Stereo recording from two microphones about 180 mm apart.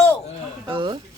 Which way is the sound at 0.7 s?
25° right (ahead or behind).